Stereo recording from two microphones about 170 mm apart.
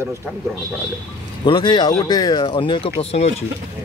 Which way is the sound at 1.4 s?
25° left (ahead or behind).